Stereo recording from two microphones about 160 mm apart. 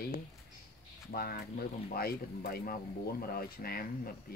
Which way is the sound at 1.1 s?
70° left (ahead or behind).